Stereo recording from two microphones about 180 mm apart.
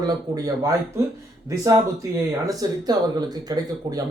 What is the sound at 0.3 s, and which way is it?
Speech, 20° right (ahead or behind).